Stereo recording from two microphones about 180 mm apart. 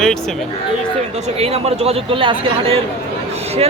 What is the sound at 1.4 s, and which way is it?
Speech, 35° right (ahead or behind).